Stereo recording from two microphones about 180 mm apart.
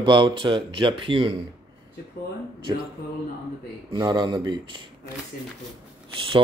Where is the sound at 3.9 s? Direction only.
25° right (ahead or behind).